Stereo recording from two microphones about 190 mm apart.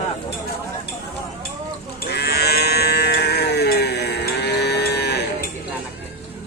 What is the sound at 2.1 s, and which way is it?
Livestock, 60° left (ahead or behind).